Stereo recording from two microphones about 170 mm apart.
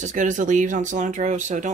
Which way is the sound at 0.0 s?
50° right (ahead or behind).